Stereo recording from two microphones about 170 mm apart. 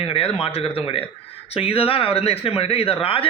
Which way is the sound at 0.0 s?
35° left (ahead or behind).